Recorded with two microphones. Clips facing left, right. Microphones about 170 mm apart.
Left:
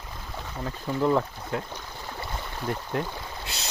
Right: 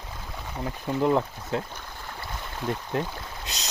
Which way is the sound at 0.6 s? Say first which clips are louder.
Right 1 dB; 15° right (ahead or behind).